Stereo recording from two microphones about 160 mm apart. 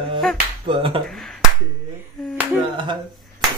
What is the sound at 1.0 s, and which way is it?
Finger snapping, centre (ahead or behind).